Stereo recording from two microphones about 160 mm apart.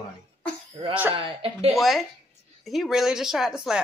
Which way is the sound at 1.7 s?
Centre (ahead or behind).